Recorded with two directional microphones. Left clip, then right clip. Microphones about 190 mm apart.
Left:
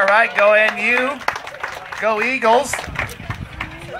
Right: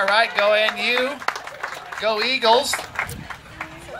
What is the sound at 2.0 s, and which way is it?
Speech, 35° right (ahead or behind).